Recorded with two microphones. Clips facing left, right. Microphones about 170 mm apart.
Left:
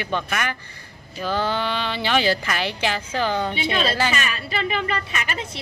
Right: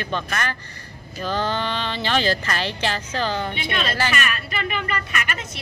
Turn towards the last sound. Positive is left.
turn(degrees=30)  # may be behind; listen again after turning